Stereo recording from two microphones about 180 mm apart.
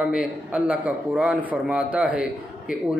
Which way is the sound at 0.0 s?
5° right (ahead or behind).